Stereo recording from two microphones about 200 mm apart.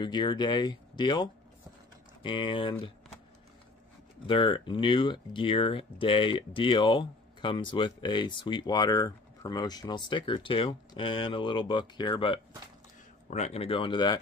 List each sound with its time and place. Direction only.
0.0 s speech: 20° left (ahead or behind)
4.3 s speech: 25° left (ahead or behind)